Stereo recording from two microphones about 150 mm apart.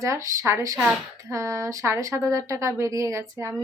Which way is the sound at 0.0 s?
20° right (ahead or behind).